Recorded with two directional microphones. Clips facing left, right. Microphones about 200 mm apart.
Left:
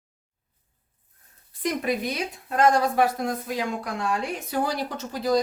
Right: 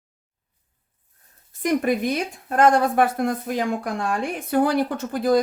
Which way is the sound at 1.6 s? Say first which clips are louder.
Right 5 dB; 50° right (ahead or behind).